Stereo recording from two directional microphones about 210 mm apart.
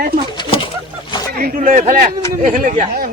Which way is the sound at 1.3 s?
45° right (ahead or behind).